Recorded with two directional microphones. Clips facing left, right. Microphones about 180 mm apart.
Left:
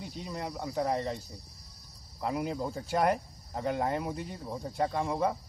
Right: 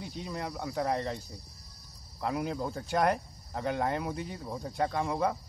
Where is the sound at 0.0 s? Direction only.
Centre (ahead or behind).